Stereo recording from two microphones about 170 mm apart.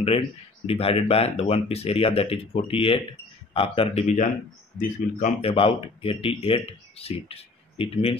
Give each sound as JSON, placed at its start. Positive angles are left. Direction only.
{"t": 0.7, "sound": "speech", "side_deg": 35}